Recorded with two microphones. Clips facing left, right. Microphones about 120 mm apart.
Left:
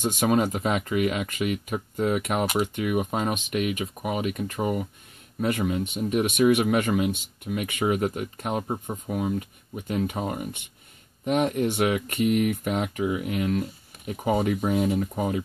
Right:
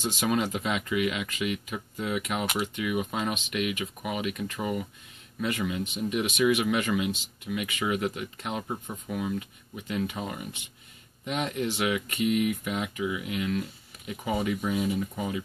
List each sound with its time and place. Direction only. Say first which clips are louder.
0.0 s speech: left 5 dB; 50° left (ahead or behind); by 5.9 s 35° left (ahead or behind)
5.9 s speech: left 4 dB; 50° left (ahead or behind)